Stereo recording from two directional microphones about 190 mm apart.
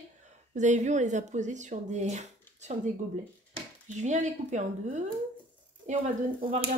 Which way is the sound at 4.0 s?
40° right (ahead or behind).